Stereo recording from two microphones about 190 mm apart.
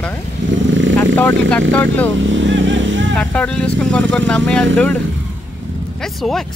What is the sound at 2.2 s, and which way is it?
Vehicle, 80° right.